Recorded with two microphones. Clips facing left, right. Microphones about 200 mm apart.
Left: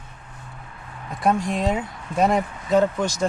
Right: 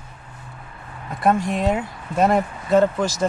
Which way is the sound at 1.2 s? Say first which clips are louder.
Right 2 dB; centre (ahead or behind).